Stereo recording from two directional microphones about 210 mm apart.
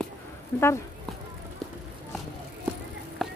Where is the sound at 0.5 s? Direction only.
10° left (ahead or behind).